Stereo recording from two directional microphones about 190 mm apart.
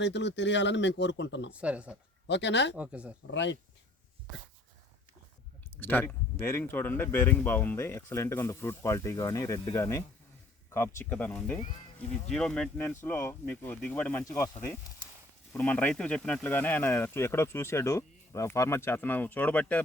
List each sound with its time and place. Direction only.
0.0 s speech: 65° left (ahead or behind)
1.5 s speech: 5° right (ahead or behind)
2.2 s speech: 65° left (ahead or behind)
2.7 s speech: 5° right (ahead or behind)
3.3 s speech: 70° left (ahead or behind)
5.8 s speech: 10° left (ahead or behind)